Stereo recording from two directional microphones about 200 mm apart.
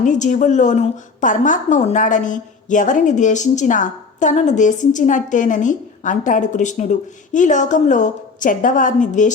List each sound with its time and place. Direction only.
0.0 s a woman's voice: 40° left (ahead or behind)